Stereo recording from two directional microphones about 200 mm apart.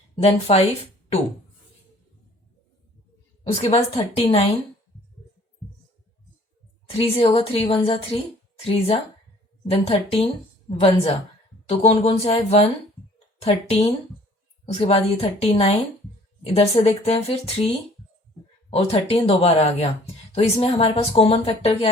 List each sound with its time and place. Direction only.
0.2 s a woman's voice: 30° left (ahead or behind)
3.6 s speech: 30° left (ahead or behind)
7.0 s a woman's voice: 30° left (ahead or behind)